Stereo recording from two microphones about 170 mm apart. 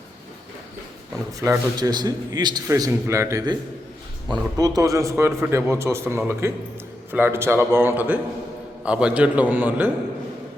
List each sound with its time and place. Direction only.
1.4 s a man's voice: 20° right (ahead or behind)